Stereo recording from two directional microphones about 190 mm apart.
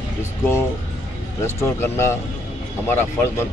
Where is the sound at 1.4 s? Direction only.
15° left (ahead or behind).